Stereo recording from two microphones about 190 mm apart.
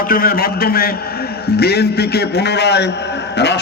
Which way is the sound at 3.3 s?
65° left (ahead or behind).